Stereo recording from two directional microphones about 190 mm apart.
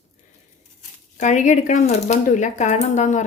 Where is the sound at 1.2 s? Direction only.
40° left (ahead or behind).